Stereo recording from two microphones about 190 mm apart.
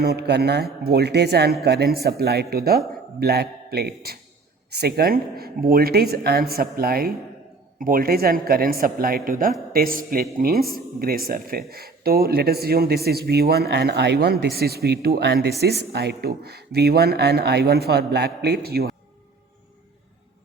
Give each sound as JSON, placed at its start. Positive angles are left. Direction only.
{"t": 0.0, "sound": "speech", "side_deg": -60}